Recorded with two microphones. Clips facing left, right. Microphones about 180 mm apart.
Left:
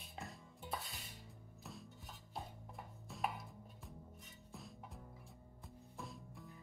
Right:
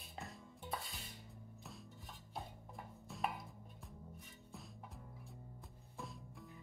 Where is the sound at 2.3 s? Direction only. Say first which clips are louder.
Even; centre (ahead or behind).